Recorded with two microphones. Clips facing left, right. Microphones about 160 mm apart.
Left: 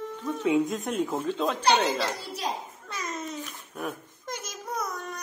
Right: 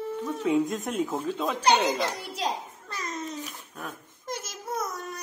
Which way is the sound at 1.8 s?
15° right (ahead or behind).